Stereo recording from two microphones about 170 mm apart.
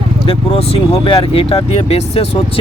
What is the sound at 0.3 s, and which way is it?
Speech, 35° left (ahead or behind).